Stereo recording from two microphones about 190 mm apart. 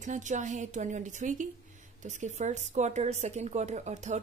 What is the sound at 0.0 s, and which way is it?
A woman's voice, 40° right (ahead or behind).